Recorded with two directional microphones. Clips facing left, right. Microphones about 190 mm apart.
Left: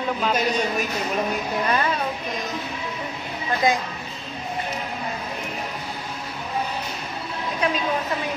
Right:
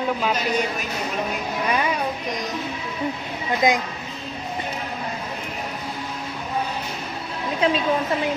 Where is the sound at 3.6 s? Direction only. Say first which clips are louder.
Right 2 dB; 20° right (ahead or behind).